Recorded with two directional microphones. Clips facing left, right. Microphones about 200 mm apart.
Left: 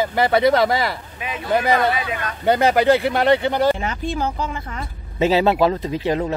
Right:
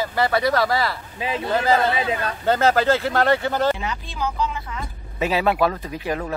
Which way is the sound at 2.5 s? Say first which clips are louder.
Left 3 dB; 15° left (ahead or behind).